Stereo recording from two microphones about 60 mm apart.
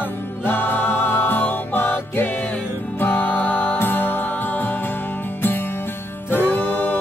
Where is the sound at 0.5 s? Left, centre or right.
Left.